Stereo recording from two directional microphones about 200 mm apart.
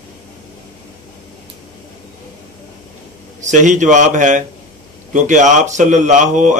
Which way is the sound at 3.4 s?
40° right (ahead or behind).